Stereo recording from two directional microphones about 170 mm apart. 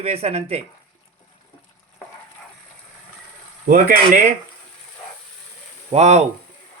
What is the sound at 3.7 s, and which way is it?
Speech, 55° right (ahead or behind).